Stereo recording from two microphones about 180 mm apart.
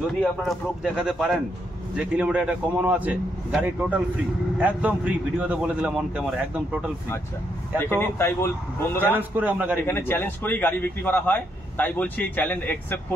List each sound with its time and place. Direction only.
0.0 s a man's voice: centre (ahead or behind)
7.8 s speech: 15° left (ahead or behind)
9.1 s a man's voice: 10° right (ahead or behind)
9.8 s speech: 10° left (ahead or behind)